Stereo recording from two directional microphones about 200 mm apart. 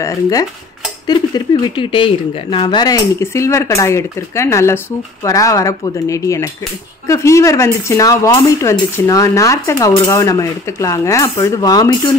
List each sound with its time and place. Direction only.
0.0 s speech: 15° left (ahead or behind)